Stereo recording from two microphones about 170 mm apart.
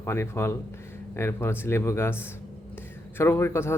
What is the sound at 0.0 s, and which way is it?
Speech, 15° left (ahead or behind).